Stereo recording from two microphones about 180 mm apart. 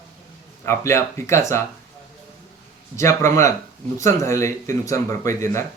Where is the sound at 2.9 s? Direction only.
15° left (ahead or behind).